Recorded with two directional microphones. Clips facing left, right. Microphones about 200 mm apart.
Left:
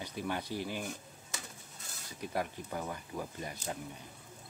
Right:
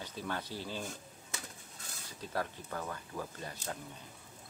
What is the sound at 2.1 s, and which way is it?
Speech, 15° left (ahead or behind).